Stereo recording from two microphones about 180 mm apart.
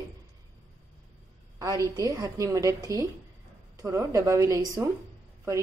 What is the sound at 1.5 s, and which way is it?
A woman's voice, 20° right (ahead or behind).